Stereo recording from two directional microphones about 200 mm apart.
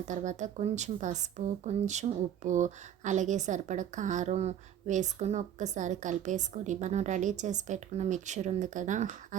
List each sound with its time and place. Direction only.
0.1 s speech: 35° right (ahead or behind)